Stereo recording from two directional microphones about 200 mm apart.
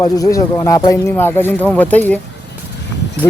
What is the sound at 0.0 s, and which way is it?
Speech, 15° left (ahead or behind).